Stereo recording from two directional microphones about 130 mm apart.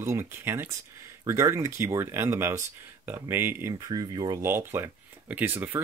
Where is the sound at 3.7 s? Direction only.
30° right (ahead or behind).